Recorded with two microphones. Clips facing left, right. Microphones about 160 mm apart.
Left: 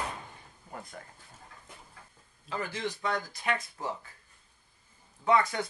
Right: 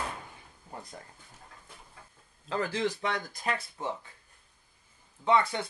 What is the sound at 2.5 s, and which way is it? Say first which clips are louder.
Speech: right 5 dB; 90° right.